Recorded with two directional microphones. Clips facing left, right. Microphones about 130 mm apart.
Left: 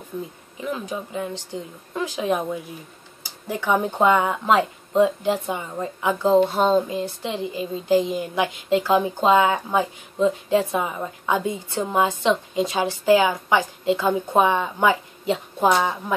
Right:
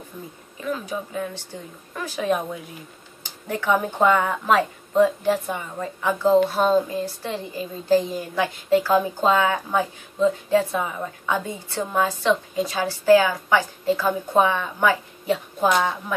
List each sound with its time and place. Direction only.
0.1 s speech: 25° left (ahead or behind)